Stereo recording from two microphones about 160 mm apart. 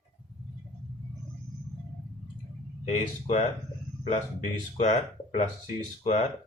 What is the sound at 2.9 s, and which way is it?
Speech, 40° left (ahead or behind).